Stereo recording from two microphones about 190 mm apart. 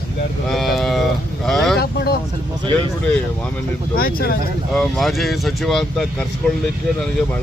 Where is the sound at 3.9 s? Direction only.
50° left (ahead or behind).